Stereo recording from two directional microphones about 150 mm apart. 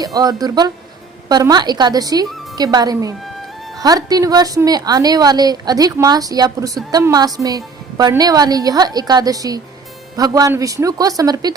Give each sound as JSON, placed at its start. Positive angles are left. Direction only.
{"t": 0.0, "sound": "a woman's voice", "side_deg": -25}